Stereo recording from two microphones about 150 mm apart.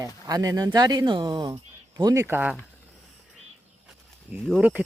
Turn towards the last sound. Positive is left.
turn(degrees=-5)  # may be behind; listen again after turning